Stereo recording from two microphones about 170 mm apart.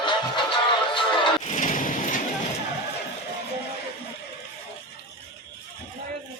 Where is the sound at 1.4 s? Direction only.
50° left (ahead or behind).